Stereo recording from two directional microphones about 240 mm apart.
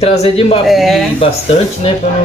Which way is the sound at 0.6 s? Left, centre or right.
Centre.